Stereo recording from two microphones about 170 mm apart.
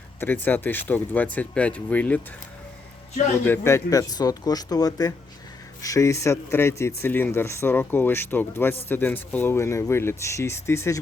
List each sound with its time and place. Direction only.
0.2 s speech: 10° left (ahead or behind)
3.4 s speech: 15° left (ahead or behind)